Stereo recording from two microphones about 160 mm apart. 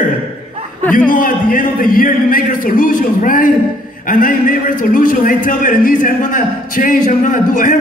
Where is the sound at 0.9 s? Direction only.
60° left (ahead or behind).